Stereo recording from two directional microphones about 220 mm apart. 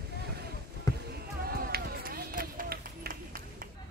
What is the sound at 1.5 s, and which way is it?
Run, 45° right (ahead or behind).